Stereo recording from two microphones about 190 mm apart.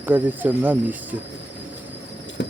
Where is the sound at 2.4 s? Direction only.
70° left (ahead or behind).